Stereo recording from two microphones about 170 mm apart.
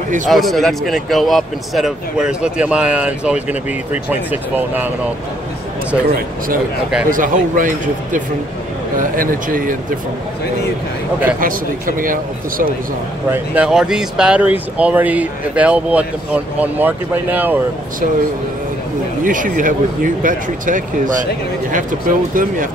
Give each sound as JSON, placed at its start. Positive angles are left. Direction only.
{"t": 0.3, "sound": "a man's voice", "side_deg": 0}
{"t": 7.1, "sound": "speech", "side_deg": -50}
{"t": 11.3, "sound": "speech", "side_deg": -55}
{"t": 13.3, "sound": "speech", "side_deg": -5}
{"t": 19.2, "sound": "speech", "side_deg": -50}